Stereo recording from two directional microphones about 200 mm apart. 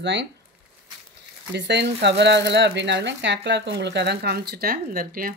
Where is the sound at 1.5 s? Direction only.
60° right (ahead or behind).